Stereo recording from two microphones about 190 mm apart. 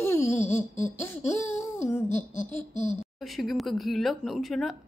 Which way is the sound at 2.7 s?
40° left (ahead or behind).